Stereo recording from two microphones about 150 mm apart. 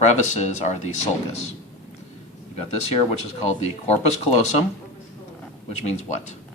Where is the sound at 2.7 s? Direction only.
50° left (ahead or behind).